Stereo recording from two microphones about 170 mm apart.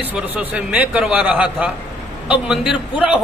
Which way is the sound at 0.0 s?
10° right (ahead or behind).